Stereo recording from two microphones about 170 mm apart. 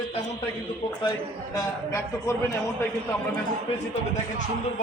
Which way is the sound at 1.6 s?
15° left (ahead or behind).